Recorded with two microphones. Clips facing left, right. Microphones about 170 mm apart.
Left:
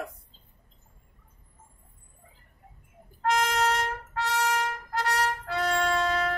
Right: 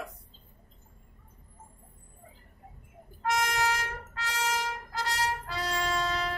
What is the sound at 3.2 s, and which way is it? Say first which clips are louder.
Trumpet: left 3 dB; 65° left (ahead or behind).